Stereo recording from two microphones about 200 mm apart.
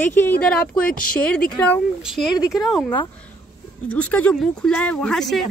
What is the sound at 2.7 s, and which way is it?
Speech, 20° left (ahead or behind).